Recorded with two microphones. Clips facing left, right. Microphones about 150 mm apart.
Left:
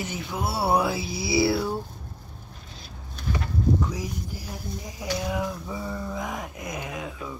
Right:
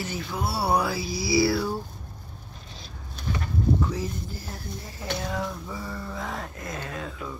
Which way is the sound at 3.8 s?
10° left (ahead or behind).